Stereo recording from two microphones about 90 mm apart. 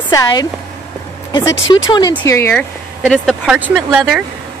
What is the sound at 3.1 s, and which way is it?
Speech, 5° right (ahead or behind).